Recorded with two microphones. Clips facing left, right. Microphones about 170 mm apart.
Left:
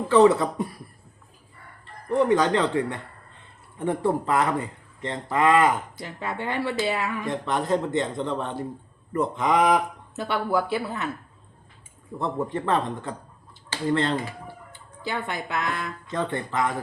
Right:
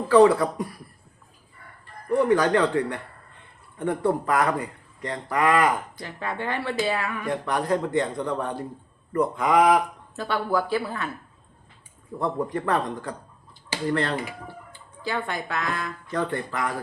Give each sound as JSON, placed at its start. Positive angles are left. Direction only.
{"t": 0.1, "sound": "a man's voice", "side_deg": 20}
{"t": 2.0, "sound": "a man's voice", "side_deg": 20}
{"t": 12.2, "sound": "a man's voice", "side_deg": 25}